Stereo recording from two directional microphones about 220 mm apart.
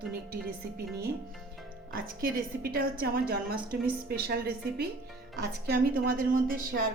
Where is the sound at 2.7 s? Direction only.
45° right (ahead or behind).